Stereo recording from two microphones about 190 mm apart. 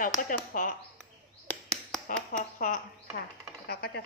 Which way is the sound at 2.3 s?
40° left (ahead or behind).